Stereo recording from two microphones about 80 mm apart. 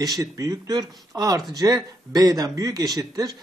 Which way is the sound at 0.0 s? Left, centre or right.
Right.